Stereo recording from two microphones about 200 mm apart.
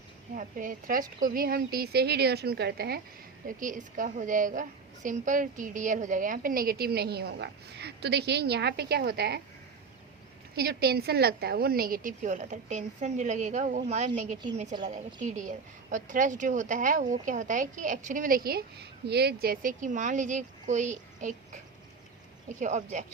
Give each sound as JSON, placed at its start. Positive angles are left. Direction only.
{"t": 0.3, "sound": "a woman's voice", "side_deg": -40}
{"t": 3.4, "sound": "a woman's voice", "side_deg": -40}
{"t": 10.5, "sound": "a woman's voice", "side_deg": -50}